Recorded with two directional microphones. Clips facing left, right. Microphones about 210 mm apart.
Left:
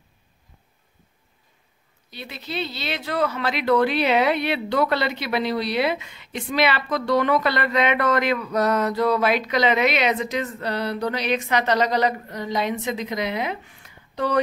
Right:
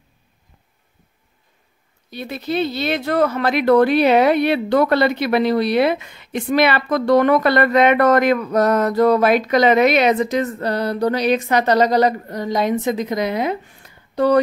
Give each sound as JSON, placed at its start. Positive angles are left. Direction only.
{"t": 2.0, "sound": "speech", "side_deg": -50}